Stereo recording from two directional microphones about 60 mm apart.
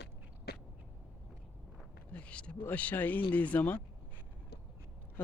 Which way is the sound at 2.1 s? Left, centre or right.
Left.